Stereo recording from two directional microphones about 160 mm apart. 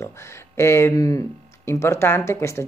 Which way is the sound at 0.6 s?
15° left (ahead or behind).